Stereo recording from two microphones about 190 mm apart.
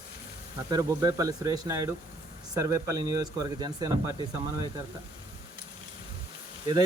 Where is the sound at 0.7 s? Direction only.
20° right (ahead or behind).